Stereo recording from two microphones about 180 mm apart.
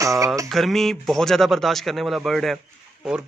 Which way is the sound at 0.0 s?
20° right (ahead or behind).